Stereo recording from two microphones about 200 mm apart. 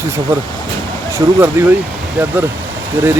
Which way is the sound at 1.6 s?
10° right (ahead or behind).